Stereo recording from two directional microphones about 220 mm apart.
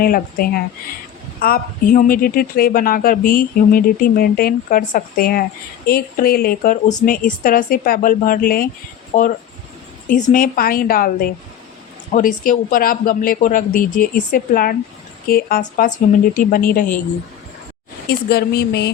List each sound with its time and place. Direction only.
0.0 s a woman's voice: 40° left (ahead or behind)
10.3 s a woman's voice: 40° left (ahead or behind)
18.3 s speech: 45° left (ahead or behind)